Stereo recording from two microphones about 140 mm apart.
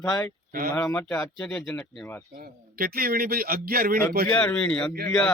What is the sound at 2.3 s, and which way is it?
Speech, 90° right.